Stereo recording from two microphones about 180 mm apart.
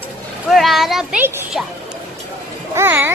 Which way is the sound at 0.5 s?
Centre (ahead or behind).